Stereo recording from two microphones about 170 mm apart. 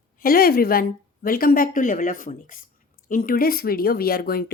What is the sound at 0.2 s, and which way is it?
Speech, 60° left (ahead or behind).